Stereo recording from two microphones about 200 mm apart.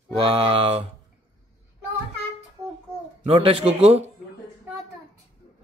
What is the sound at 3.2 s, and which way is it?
Speech, 25° right (ahead or behind).